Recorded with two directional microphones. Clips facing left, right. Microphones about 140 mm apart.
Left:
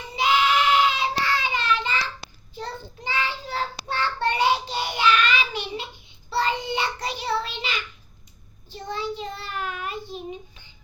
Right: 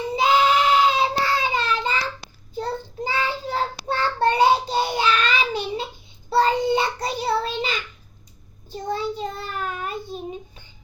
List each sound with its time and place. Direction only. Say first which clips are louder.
0.2 s child singing: right 2 dB; 35° right (ahead or behind)